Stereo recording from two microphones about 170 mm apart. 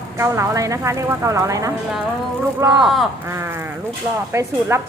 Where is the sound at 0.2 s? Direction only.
20° right (ahead or behind).